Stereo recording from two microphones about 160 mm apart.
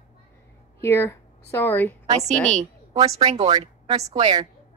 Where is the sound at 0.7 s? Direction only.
15° left (ahead or behind).